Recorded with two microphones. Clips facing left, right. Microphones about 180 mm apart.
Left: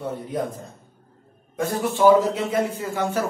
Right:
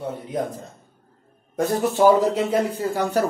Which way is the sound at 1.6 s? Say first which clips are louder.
Right 2 dB; 40° right (ahead or behind).